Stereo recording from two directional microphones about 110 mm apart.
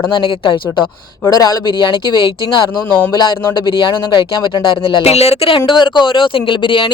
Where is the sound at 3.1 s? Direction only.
40° left (ahead or behind); by 5.6 s 65° left (ahead or behind).